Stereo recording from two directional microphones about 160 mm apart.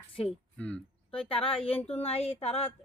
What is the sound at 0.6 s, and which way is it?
Speech, 5° left (ahead or behind).